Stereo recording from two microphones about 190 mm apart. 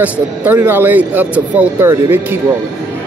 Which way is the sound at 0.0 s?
10° right (ahead or behind).